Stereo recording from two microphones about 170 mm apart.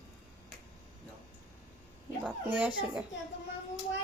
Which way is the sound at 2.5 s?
10° right (ahead or behind).